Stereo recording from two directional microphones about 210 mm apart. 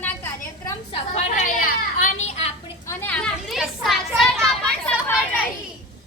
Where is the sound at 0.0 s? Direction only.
10° left (ahead or behind).